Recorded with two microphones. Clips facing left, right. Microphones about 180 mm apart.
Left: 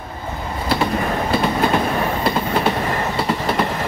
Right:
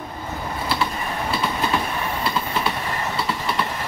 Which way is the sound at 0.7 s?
55° left (ahead or behind).